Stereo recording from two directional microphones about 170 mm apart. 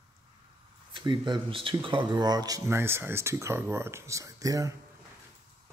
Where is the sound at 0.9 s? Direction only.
25° right (ahead or behind).